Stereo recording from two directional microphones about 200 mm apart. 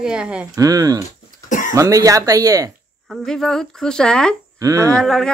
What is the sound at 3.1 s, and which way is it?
Speech, centre (ahead or behind).